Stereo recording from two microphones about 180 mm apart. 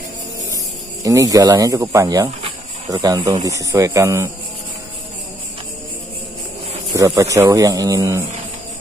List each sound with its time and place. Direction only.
1.0 s a man's voice: 20° right (ahead or behind)
6.9 s a man's voice: 20° right (ahead or behind)